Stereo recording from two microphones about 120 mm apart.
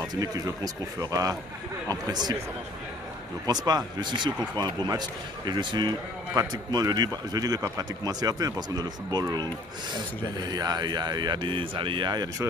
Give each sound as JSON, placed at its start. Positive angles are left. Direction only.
{"t": 0.1, "sound": "speech", "side_deg": -30}
{"t": 1.9, "sound": "a man's voice", "side_deg": -35}
{"t": 3.4, "sound": "a man's voice", "side_deg": -35}
{"t": 10.5, "sound": "a man's voice", "side_deg": -35}